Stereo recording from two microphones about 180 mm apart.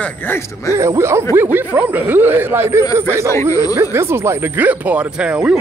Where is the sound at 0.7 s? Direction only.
15° right (ahead or behind).